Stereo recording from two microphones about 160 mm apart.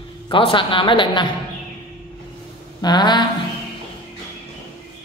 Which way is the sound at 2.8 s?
25° left (ahead or behind).